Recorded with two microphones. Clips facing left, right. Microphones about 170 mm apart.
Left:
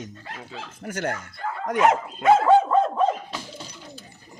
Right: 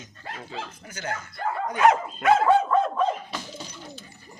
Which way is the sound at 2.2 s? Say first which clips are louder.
Left 5 dB; 25° left (ahead or behind).